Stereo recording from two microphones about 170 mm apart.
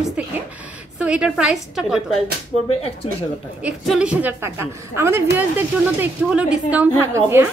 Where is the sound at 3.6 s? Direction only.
5° right (ahead or behind).